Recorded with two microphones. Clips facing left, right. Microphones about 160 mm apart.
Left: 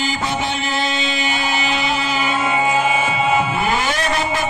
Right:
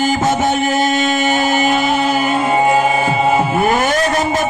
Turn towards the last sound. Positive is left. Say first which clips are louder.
# right 5 dB
turn(degrees=-40)  # may be behind; listen again after turning